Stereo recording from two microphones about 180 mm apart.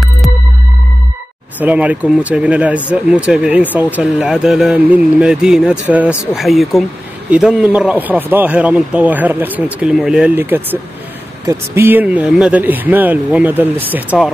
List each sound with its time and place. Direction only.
1.6 s speech: 10° right (ahead or behind)